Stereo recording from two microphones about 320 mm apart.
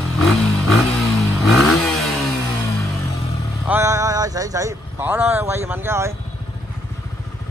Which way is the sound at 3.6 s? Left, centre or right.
Centre.